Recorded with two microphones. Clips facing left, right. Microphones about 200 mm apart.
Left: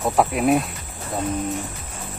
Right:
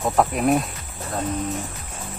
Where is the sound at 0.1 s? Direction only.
5° left (ahead or behind).